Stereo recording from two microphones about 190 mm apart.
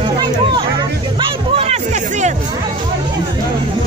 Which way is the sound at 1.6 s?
35° right (ahead or behind).